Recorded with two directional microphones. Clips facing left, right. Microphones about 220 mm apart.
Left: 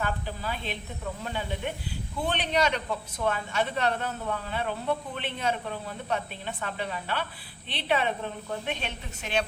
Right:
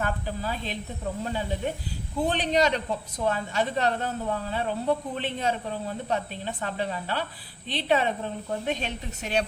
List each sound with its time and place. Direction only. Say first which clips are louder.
0.0 s speech: right 2 dB; 40° right (ahead or behind)